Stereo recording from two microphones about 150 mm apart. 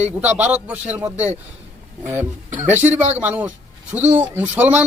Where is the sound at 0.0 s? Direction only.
10° right (ahead or behind).